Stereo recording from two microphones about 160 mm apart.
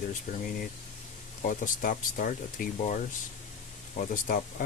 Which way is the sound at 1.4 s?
60° left (ahead or behind).